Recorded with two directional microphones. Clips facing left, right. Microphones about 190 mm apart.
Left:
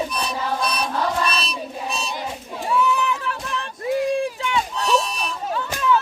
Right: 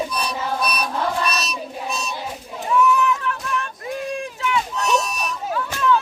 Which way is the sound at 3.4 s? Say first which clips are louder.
Right 3 dB; 30° left (ahead or behind).